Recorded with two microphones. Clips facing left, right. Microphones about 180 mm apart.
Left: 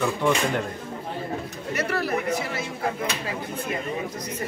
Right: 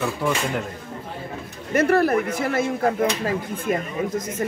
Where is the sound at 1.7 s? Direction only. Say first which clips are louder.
Right 8 dB; 50° right (ahead or behind).